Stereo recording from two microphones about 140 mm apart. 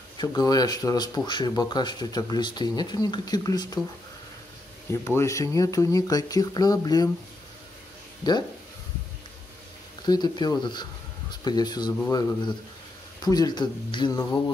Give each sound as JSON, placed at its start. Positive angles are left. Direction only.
{"t": 0.2, "sound": "speech", "side_deg": 25}
{"t": 5.0, "sound": "speech", "side_deg": 20}
{"t": 10.0, "sound": "speech", "side_deg": 30}